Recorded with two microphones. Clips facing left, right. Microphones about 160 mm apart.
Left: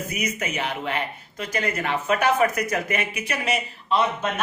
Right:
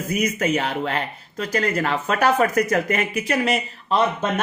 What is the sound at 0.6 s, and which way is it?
Speech, 40° right (ahead or behind).